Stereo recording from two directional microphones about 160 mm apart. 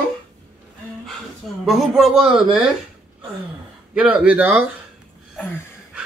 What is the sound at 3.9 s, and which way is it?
Speech, 5° right (ahead or behind).